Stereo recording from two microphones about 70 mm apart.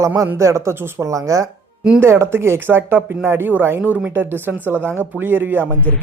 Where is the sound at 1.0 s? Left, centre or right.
Right.